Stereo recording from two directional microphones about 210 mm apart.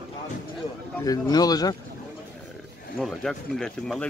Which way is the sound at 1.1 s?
20° left (ahead or behind).